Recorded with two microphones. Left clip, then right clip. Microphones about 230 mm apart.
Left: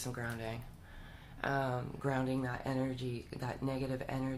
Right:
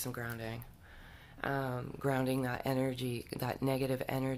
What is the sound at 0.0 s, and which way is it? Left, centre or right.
Speech, right.